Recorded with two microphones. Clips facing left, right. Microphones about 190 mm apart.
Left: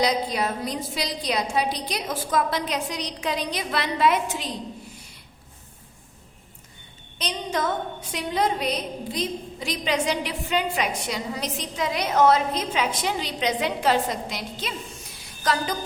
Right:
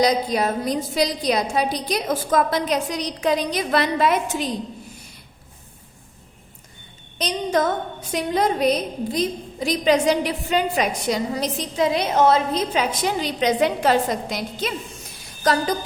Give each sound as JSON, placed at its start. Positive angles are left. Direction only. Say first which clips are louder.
{"t": 0.0, "sound": "a woman's voice", "louder": "right 4 dB", "side_deg": -40}
{"t": 7.2, "sound": "a woman's voice", "louder": "right 6 dB", "side_deg": -45}